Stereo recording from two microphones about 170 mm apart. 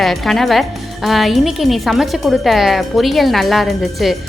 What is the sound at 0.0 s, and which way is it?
A woman's voice, centre (ahead or behind).